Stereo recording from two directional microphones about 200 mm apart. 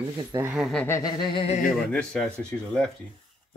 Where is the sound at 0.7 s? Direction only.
5° left (ahead or behind).